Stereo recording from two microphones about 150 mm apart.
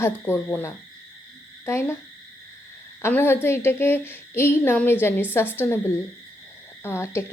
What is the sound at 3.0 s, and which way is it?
A woman's voice, 15° left (ahead or behind).